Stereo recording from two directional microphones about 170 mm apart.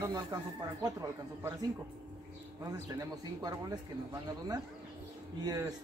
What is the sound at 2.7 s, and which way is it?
Speech, 20° right (ahead or behind).